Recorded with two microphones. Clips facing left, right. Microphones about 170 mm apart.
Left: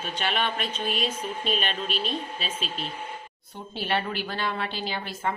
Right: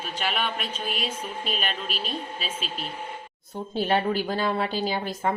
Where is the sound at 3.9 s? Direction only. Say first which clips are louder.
Right 4 dB; 40° right (ahead or behind).